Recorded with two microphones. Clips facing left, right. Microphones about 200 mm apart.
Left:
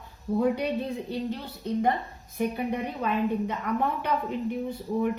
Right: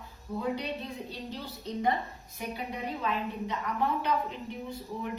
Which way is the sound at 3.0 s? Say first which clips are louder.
Left 8 dB; 55° left (ahead or behind).